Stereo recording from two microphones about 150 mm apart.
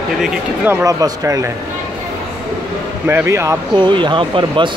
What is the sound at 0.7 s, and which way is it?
Speech, 20° right (ahead or behind).